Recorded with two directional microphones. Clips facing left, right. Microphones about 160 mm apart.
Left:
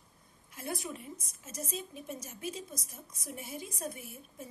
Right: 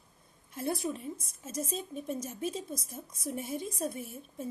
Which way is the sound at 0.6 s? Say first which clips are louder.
Right 6 dB; 30° right (ahead or behind).